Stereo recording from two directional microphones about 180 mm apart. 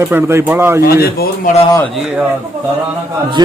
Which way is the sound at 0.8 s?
55° left (ahead or behind).